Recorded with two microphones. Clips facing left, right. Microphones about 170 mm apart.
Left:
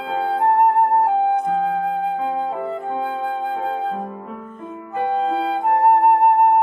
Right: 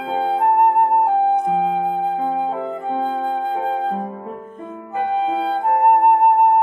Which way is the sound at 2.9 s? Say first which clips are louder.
Right 5 dB; 40° right (ahead or behind).